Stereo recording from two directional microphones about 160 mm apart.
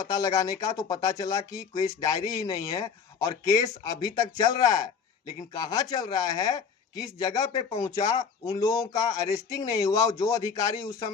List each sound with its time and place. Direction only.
0.1 s speech: 20° left (ahead or behind)